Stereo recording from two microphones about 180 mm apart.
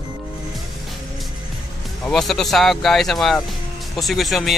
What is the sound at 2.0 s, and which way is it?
Speech, centre (ahead or behind).